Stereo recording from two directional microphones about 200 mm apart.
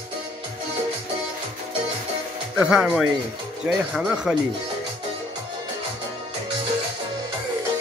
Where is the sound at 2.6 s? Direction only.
5° right (ahead or behind).